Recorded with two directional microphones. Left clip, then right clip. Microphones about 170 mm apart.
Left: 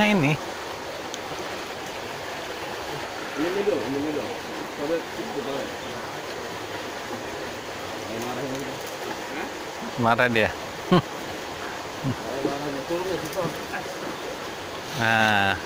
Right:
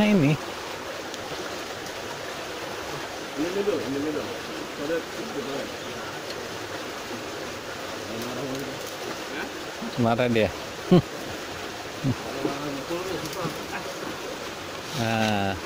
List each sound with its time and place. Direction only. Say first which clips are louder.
0.0 s speech: left 1 dB; 55° right (ahead or behind)
10.0 s speech: left 3 dB; 60° right (ahead or behind)
15.0 s speech: left 6 dB; 45° right (ahead or behind)